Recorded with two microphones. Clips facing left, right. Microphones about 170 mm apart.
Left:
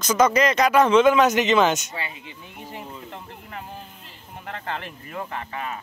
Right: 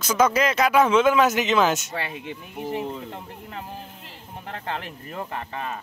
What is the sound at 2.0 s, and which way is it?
Speech, 55° right (ahead or behind).